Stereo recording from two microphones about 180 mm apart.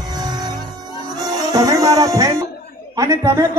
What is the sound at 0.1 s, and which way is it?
Music, 20° right (ahead or behind).